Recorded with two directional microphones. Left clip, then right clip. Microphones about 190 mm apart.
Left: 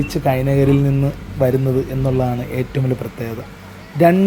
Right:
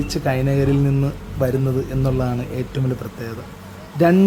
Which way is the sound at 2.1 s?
5° left (ahead or behind).